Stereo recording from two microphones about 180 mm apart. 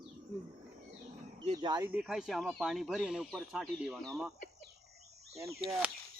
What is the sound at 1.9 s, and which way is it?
Speech, 5° right (ahead or behind).